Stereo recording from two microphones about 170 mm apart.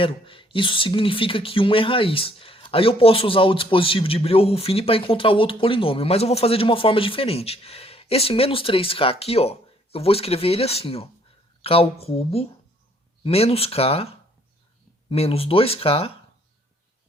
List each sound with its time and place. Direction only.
0.0 s speech: 30° left (ahead or behind)